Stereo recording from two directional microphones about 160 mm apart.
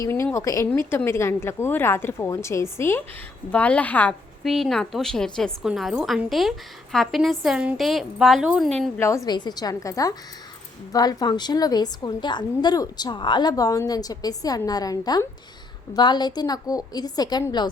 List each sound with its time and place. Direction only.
0.0 s a woman's voice: 20° left (ahead or behind); by 8.7 s 5° right (ahead or behind)
9.0 s a woman's voice: 20° left (ahead or behind)